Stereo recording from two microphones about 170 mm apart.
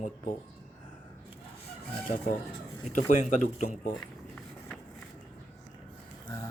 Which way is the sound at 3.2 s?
45° left (ahead or behind).